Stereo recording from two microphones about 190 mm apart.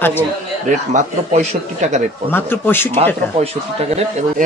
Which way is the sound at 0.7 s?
40° right (ahead or behind).